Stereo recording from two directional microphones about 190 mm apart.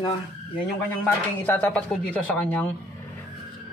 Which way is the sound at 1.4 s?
5° left (ahead or behind).